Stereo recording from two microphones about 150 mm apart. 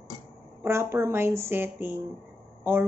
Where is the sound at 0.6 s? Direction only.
15° right (ahead or behind).